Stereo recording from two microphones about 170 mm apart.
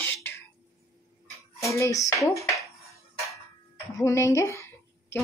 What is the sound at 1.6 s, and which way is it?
Speech, 20° left (ahead or behind).